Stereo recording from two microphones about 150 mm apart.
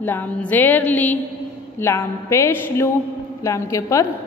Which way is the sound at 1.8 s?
20° left (ahead or behind).